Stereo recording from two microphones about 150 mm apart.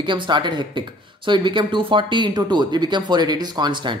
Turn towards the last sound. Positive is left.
turn(degrees=-30)  # may be behind; listen again after turning